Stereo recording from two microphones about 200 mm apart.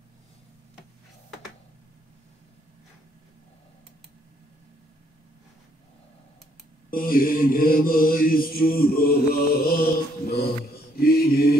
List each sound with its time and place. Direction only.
6.9 s mantra: 45° left (ahead or behind)